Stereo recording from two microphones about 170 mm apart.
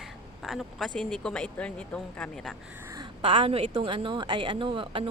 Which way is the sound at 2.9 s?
25° right (ahead or behind).